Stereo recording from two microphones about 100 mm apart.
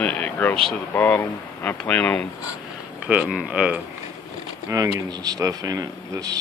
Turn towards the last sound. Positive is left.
turn(degrees=-35)  # may be behind; listen again after turning